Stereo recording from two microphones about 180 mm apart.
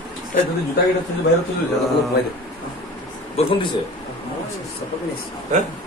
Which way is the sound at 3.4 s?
35° left (ahead or behind).